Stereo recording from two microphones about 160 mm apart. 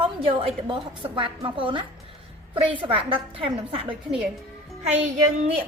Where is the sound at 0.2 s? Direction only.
30° right (ahead or behind).